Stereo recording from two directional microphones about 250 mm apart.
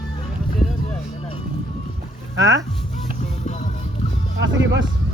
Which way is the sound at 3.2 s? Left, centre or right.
Left.